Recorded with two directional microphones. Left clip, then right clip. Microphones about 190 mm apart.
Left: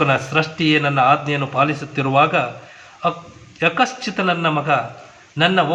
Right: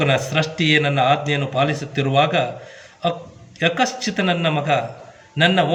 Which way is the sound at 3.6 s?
50° right (ahead or behind).